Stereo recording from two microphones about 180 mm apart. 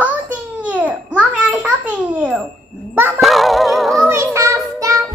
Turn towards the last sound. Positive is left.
turn(degrees=-20)  # may be behind; listen again after turning